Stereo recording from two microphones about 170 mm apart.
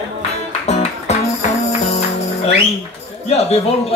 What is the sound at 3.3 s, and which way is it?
Speech, 40° left (ahead or behind).